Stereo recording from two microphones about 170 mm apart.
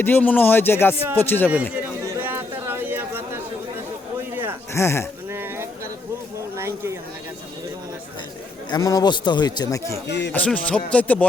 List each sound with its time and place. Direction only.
0.0 s speech: 10° left (ahead or behind)
1.7 s chatter: 10° right (ahead or behind)
4.7 s speech: 15° left (ahead or behind)
5.3 s a sound: 15° right (ahead or behind)
6.6 s speech: 15° right (ahead or behind)
8.7 s a man's voice: 20° left (ahead or behind)
10.1 s speech: 90° left
10.3 s speech: 10° left (ahead or behind)